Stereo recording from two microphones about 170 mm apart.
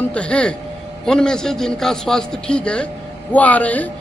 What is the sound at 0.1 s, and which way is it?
A man's voice, 5° left (ahead or behind).